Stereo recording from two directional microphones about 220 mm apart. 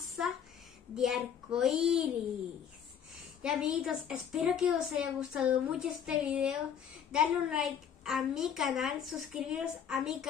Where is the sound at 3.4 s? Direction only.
5° right (ahead or behind).